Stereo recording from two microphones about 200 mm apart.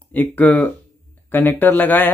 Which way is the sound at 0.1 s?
10° left (ahead or behind).